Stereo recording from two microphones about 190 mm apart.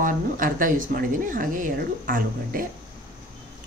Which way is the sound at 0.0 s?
45° right (ahead or behind).